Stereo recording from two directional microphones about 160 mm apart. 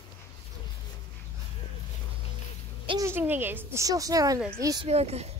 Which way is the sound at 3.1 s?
15° right (ahead or behind).